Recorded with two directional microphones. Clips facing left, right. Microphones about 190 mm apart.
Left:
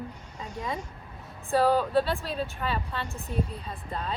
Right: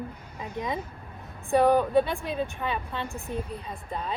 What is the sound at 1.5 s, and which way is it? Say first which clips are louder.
Speech: right 2 dB; 20° right (ahead or behind).